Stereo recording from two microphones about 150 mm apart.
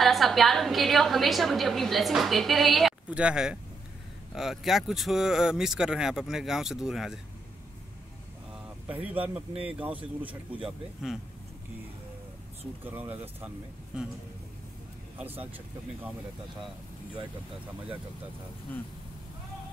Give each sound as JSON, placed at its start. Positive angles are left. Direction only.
{"t": 0.0, "sound": "a woman's voice", "side_deg": 0}
{"t": 8.8, "sound": "a woman's voice", "side_deg": -10}
{"t": 12.8, "sound": "speech", "side_deg": -10}
{"t": 15.1, "sound": "speech", "side_deg": -10}